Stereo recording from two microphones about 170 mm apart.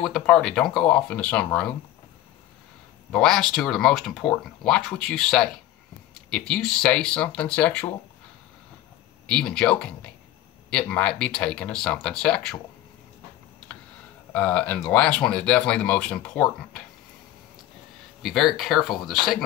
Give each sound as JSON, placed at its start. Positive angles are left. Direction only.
{"t": 0.0, "sound": "speech", "side_deg": 0}
{"t": 3.1, "sound": "speech", "side_deg": 5}
{"t": 9.3, "sound": "speech", "side_deg": 5}
{"t": 14.3, "sound": "speech", "side_deg": 10}
{"t": 18.2, "sound": "speech", "side_deg": 0}